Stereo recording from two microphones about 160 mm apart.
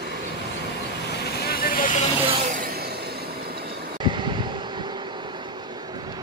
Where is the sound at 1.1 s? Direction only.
90° left; by 1.9 s 65° left (ahead or behind).